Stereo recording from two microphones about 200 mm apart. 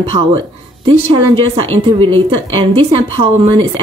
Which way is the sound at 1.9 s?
25° right (ahead or behind).